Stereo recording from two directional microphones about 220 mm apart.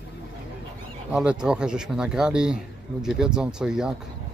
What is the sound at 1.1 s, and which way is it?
Speech, 5° right (ahead or behind).